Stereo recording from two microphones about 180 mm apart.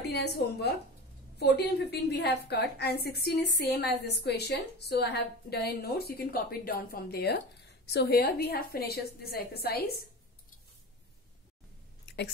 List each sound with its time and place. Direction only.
0.0 s a woman's voice: 65° left (ahead or behind)